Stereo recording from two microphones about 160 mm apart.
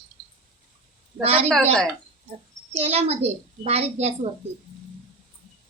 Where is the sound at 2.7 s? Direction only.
40° right (ahead or behind).